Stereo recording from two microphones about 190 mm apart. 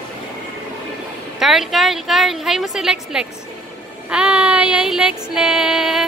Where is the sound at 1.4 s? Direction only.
Centre (ahead or behind).